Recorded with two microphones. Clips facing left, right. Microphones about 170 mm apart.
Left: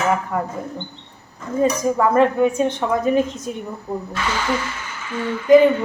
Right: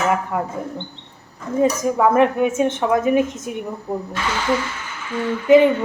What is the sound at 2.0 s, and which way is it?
A woman's voice, 15° right (ahead or behind).